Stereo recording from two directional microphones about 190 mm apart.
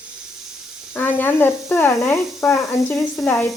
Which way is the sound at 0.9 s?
10° left (ahead or behind).